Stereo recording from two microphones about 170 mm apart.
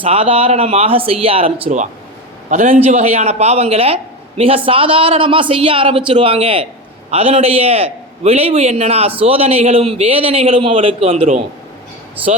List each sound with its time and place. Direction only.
0.0 s a man's voice: 35° right (ahead or behind)